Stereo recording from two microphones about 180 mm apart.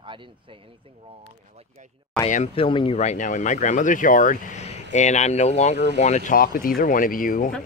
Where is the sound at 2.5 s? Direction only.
30° left (ahead or behind).